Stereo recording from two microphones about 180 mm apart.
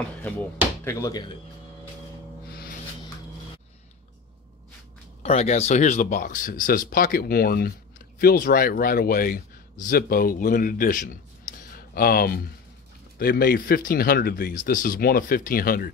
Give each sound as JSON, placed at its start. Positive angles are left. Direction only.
{"t": 0.8, "sound": "speech", "side_deg": 15}
{"t": 5.2, "sound": "a man's voice", "side_deg": 35}